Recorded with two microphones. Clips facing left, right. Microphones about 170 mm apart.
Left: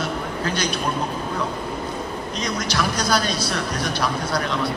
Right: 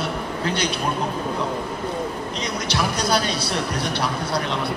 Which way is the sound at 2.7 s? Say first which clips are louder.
Right 1 dB; 30° right (ahead or behind).